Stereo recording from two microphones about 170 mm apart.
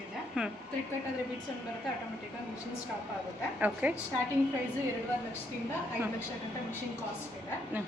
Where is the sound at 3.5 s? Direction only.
10° right (ahead or behind).